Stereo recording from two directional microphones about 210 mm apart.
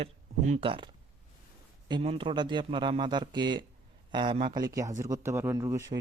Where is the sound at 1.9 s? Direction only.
25° right (ahead or behind).